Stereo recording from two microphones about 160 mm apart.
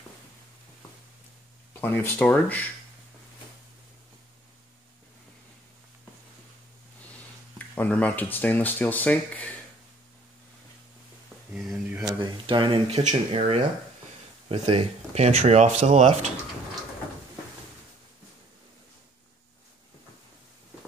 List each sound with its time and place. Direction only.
1.7 s speech: 10° left (ahead or behind)
7.5 s speech: 10° left (ahead or behind)
11.5 s a sound: centre (ahead or behind)
12.1 s speech: 30° right (ahead or behind); by 16.3 s 45° right (ahead or behind)